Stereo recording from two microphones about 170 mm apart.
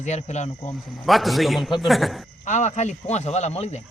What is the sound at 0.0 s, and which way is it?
Speech, 40° left (ahead or behind).